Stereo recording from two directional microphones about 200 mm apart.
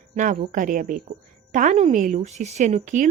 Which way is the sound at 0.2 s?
40° right (ahead or behind).